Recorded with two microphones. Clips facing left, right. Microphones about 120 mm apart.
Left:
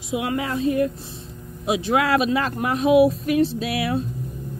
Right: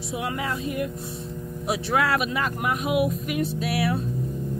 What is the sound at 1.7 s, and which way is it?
Speech, 20° left (ahead or behind).